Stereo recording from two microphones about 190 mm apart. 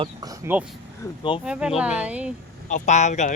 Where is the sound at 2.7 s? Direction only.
40° left (ahead or behind).